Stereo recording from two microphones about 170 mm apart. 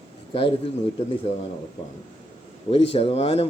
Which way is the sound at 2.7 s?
35° left (ahead or behind).